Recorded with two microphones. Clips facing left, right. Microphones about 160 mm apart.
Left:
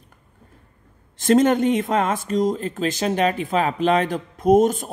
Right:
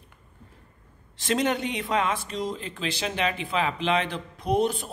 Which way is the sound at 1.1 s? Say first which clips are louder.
Left 9 dB; 45° left (ahead or behind).